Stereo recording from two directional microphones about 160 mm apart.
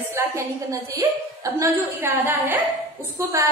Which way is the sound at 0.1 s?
20° right (ahead or behind).